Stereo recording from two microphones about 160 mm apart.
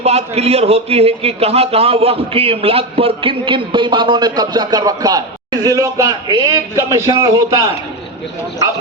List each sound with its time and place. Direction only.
0.0 s a man's voice: 40° right (ahead or behind); by 7.6 s 20° right (ahead or behind)